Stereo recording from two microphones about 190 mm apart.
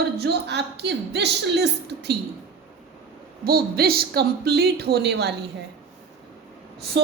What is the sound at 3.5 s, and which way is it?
A woman's voice, 55° right (ahead or behind).